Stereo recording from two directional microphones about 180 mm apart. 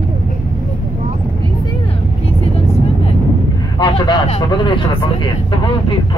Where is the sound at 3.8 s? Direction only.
30° left (ahead or behind).